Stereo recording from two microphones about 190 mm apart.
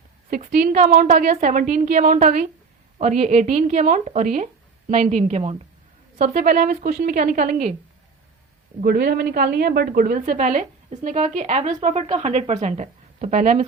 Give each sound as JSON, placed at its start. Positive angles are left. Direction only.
{"t": 0.3, "sound": "a woman's voice", "side_deg": -45}
{"t": 8.8, "sound": "a woman's voice", "side_deg": -55}